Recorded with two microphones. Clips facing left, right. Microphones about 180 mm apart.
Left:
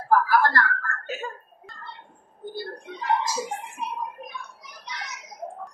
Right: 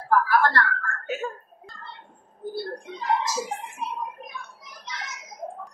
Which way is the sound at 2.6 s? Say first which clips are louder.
Right 1 dB; 65° left (ahead or behind).